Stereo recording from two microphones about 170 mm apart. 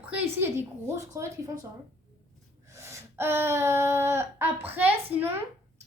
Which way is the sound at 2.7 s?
15° right (ahead or behind).